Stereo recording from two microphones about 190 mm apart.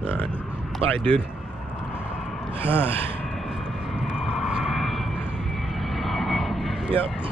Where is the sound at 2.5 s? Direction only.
30° right (ahead or behind).